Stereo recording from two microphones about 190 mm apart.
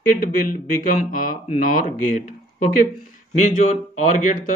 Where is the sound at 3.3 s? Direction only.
40° left (ahead or behind).